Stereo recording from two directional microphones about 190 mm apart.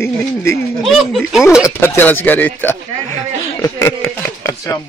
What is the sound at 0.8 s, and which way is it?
Speech, centre (ahead or behind).